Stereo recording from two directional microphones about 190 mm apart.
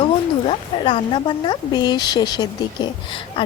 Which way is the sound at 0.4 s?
25° left (ahead or behind).